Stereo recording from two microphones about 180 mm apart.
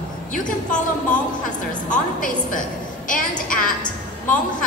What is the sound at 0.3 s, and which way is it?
Speech, 45° left (ahead or behind).